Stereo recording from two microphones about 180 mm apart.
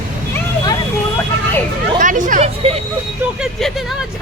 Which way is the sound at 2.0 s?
45° right (ahead or behind).